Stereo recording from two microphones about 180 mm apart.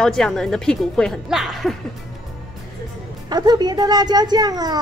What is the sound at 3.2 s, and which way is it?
Speech, 25° right (ahead or behind).